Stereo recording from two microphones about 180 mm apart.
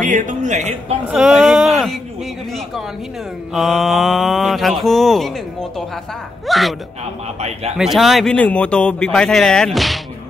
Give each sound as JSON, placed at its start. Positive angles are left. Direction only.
{"t": 0.0, "sound": "speech", "side_deg": -45}
{"t": 1.0, "sound": "speech", "side_deg": -5}
{"t": 3.5, "sound": "speech", "side_deg": 0}
{"t": 7.3, "sound": "a man's voice", "side_deg": -35}
{"t": 7.7, "sound": "speech", "side_deg": 0}